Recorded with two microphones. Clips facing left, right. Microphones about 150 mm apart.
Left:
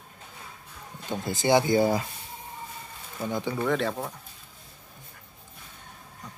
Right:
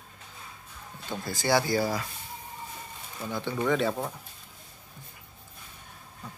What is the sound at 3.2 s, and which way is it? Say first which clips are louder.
Speech: left 3 dB; 20° left (ahead or behind).